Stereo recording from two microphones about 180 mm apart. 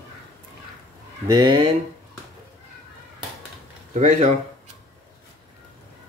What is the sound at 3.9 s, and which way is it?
Speech, 45° right (ahead or behind).